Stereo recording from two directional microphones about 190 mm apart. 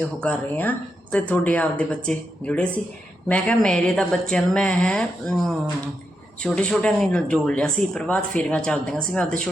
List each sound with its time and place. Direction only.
0.2 s speech: 10° left (ahead or behind)